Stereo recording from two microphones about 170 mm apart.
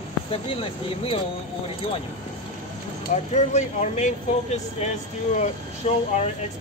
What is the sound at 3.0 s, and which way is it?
Speech, 45° left (ahead or behind).